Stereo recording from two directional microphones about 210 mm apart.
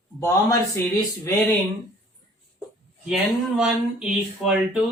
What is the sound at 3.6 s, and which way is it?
Speech, 5° right (ahead or behind).